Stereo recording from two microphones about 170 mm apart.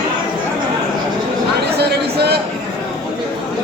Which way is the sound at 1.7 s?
75° right (ahead or behind).